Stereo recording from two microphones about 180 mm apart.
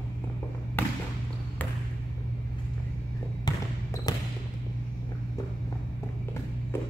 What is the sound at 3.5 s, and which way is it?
Basketball bounce, 20° left (ahead or behind).